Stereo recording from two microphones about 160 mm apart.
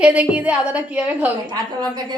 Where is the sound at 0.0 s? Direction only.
10° right (ahead or behind).